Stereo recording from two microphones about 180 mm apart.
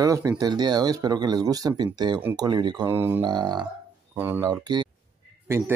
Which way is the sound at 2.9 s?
15° right (ahead or behind).